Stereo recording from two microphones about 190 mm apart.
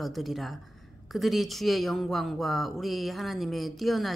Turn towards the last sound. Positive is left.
turn(degrees=0)  # may be behind; listen again after turning